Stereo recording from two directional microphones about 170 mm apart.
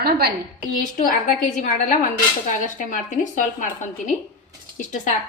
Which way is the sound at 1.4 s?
50° left (ahead or behind).